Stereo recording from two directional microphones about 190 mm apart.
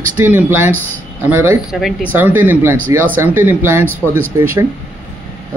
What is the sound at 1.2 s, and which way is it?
Speech, 10° right (ahead or behind).